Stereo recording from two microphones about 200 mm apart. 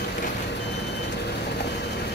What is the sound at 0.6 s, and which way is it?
Reversing beeps, 60° left (ahead or behind).